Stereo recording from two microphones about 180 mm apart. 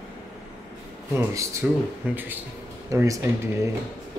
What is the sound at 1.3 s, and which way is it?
Speech, 15° right (ahead or behind).